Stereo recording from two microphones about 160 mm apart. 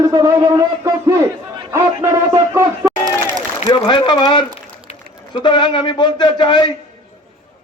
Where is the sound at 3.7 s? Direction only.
30° left (ahead or behind).